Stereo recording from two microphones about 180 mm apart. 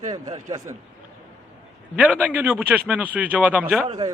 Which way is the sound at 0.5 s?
20° right (ahead or behind).